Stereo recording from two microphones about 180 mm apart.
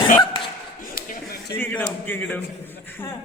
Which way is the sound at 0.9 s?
55° left (ahead or behind).